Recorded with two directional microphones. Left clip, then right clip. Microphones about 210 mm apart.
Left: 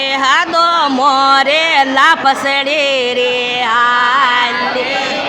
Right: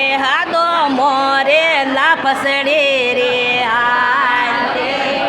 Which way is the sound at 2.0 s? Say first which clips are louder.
Left 5 dB; 15° left (ahead or behind).